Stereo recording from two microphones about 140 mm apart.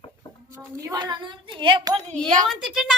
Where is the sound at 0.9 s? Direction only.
30° right (ahead or behind).